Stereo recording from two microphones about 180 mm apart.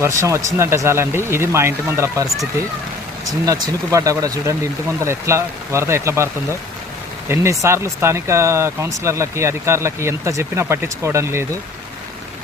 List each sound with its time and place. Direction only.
0.0 s speech: 15° right (ahead or behind)
7.6 s speech: 15° right (ahead or behind)